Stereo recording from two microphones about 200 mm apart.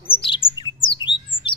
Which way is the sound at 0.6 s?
25° left (ahead or behind).